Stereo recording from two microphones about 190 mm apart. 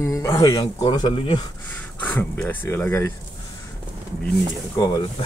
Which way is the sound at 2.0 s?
5° left (ahead or behind).